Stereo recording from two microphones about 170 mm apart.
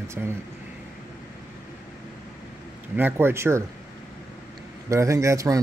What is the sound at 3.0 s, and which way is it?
Speech, 10° right (ahead or behind).